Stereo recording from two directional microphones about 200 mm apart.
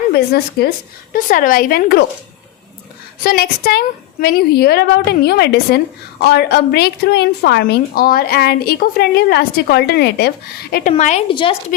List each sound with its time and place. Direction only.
0.1 s speech: 55° left (ahead or behind)
1.1 s a woman's voice: 45° left (ahead or behind)
3.2 s a woman's voice: 50° left (ahead or behind)
10.9 s a woman's voice: 35° left (ahead or behind)